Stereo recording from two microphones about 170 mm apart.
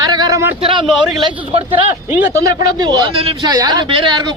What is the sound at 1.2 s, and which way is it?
Speech, 30° right (ahead or behind).